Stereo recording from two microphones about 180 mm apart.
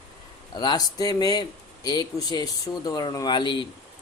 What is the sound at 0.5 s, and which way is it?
Speech, 20° left (ahead or behind).